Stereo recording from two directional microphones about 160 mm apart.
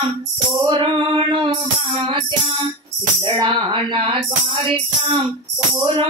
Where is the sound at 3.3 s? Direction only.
30° right (ahead or behind).